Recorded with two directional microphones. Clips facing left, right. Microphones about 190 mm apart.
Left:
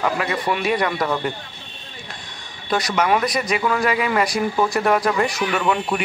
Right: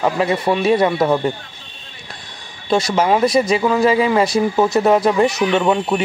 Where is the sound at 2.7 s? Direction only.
25° right (ahead or behind).